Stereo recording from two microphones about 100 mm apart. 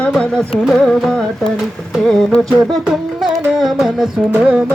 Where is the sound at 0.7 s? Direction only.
5° left (ahead or behind).